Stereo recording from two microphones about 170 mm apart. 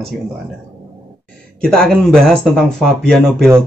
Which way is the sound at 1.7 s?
5° left (ahead or behind).